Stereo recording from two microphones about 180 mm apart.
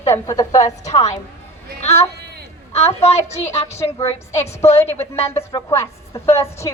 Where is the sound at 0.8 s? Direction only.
40° left (ahead or behind).